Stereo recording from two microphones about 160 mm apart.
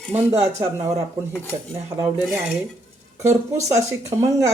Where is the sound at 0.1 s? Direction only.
15° right (ahead or behind).